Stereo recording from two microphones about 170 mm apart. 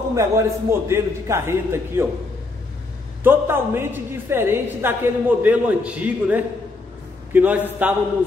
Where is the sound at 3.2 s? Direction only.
15° right (ahead or behind).